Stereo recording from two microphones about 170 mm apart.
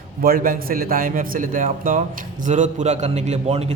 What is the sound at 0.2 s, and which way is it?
A man's voice, 60° right (ahead or behind).